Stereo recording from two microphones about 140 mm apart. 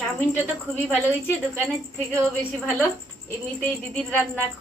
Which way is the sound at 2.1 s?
10° left (ahead or behind).